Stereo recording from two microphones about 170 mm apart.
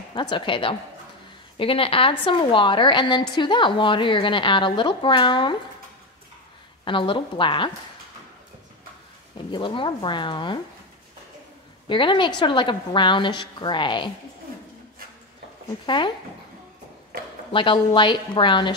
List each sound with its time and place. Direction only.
0.1 s a woman's voice: 25° left (ahead or behind)
6.8 s speech: 30° left (ahead or behind)
9.5 s speech: 30° left (ahead or behind)
11.9 s speech: 30° left (ahead or behind)
15.8 s speech: 30° left (ahead or behind)
17.5 s speech: 30° left (ahead or behind)